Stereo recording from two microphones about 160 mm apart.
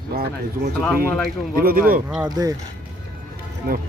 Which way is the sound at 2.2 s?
25° right (ahead or behind).